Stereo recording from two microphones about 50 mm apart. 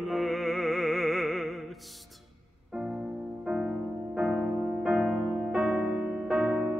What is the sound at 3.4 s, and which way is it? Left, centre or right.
Music, centre.